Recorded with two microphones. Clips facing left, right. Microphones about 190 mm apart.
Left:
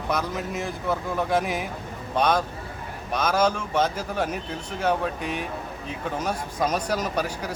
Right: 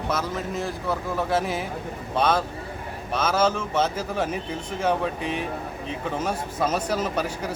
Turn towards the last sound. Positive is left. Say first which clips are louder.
# right 1 dB
turn(degrees=10)  # may be behind; listen again after turning